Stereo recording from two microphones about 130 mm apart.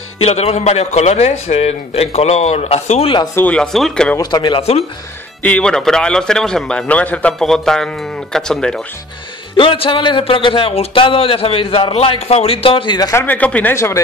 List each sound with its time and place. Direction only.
0.2 s a man's voice: 50° left (ahead or behind)
3.3 s speech: 10° left (ahead or behind)
4.2 s speech: 35° left (ahead or behind)
5.4 s a man's voice: 10° left (ahead or behind)
9.6 s speech: 45° left (ahead or behind)
13.1 s speech: 15° left (ahead or behind)
13.7 s speech: 20° left (ahead or behind)